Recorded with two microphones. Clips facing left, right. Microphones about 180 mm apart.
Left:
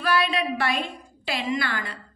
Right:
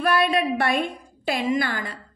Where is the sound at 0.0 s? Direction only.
50° right (ahead or behind).